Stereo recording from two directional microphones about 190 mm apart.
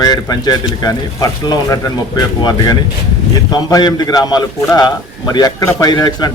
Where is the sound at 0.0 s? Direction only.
20° left (ahead or behind).